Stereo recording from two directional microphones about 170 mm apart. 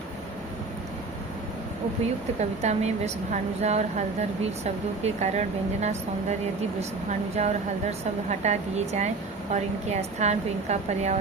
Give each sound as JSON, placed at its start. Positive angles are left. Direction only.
{"t": 2.4, "sound": "speech", "side_deg": -40}